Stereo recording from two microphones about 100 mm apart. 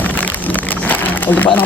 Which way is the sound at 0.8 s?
15° left (ahead or behind).